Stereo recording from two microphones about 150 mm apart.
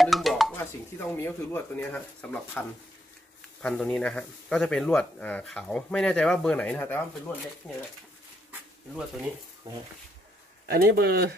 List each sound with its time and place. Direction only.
0.0 s a sound: centre (ahead or behind)
0.6 s speech: 15° left (ahead or behind)
3.6 s speech: 5° left (ahead or behind)
10.7 s speech: 90° right